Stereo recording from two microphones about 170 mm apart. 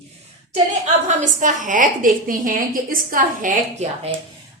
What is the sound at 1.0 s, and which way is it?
A woman's voice, 45° right (ahead or behind).